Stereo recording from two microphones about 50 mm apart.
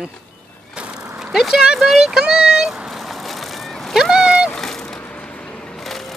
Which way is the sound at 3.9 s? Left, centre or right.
Centre.